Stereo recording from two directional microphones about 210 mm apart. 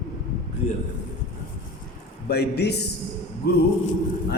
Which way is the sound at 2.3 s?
50° left (ahead or behind).